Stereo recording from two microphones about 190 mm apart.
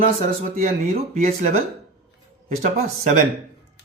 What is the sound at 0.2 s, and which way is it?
Speech, 30° right (ahead or behind).